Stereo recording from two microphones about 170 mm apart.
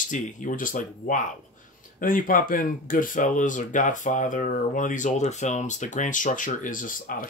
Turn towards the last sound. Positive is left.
turn(degrees=55)  # may be behind; listen again after turning